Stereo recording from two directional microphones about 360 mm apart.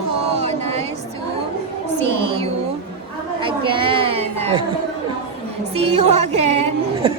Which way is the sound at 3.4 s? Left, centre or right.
Centre.